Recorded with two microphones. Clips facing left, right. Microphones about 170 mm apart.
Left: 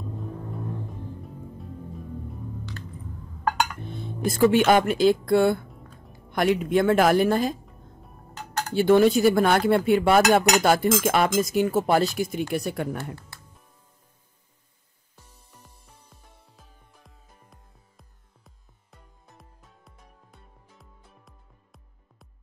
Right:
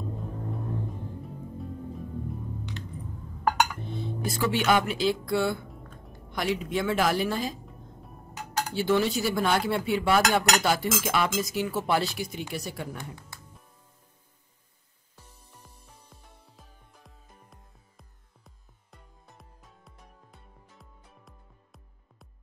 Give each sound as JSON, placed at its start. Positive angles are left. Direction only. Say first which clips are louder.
{"t": 3.8, "sound": "dishes", "louder": "left 4 dB", "side_deg": 50}
{"t": 4.6, "sound": "speech", "louder": "left 6 dB", "side_deg": 50}
{"t": 5.7, "sound": "music", "louder": "right 1 dB", "side_deg": 0}
{"t": 6.3, "sound": "speech", "louder": "left 7 dB", "side_deg": 55}
{"t": 7.6, "sound": "music", "louder": "right 2 dB", "side_deg": 0}
{"t": 8.7, "sound": "speech", "louder": "left 8 dB", "side_deg": 55}
{"t": 15.6, "sound": "music", "louder": "even", "side_deg": 0}